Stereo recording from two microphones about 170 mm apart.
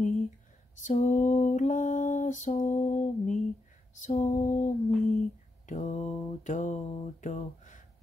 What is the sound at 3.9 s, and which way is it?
Mantra, 45° left (ahead or behind).